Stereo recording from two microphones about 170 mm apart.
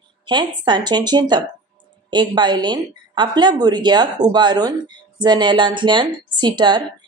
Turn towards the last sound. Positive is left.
turn(degrees=-25)  # may be behind; listen again after turning